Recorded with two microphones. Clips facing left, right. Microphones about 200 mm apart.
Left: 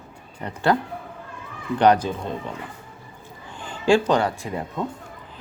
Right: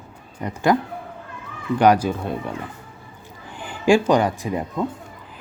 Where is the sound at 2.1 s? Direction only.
10° right (ahead or behind).